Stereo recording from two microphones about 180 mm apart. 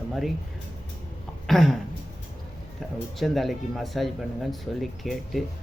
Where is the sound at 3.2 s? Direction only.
Centre (ahead or behind).